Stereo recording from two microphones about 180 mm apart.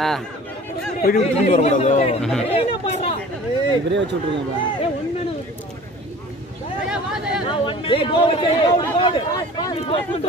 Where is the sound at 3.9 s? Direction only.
80° right.